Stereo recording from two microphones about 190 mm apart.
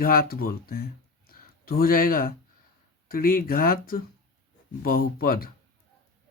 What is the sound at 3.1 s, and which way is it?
Speech, 50° left (ahead or behind).